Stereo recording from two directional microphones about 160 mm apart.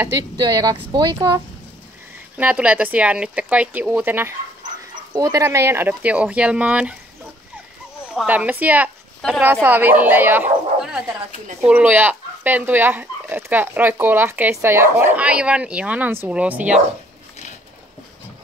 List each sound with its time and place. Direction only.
0.0 s speech: 25° right (ahead or behind)
2.3 s speech: 10° right (ahead or behind)
8.1 s speech: 5° right (ahead or behind)